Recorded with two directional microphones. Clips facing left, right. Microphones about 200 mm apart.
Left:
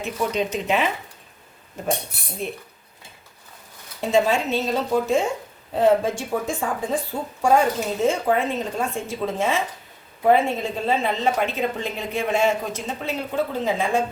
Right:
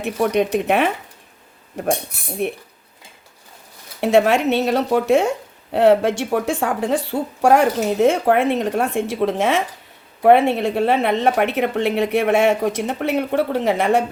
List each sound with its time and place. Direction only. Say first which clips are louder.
0.0 s speech: right 6 dB; 65° right (ahead or behind)
4.0 s speech: right 5 dB; 70° right (ahead or behind)